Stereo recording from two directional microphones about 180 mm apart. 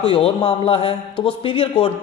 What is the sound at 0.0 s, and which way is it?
A man's voice, 30° left (ahead or behind).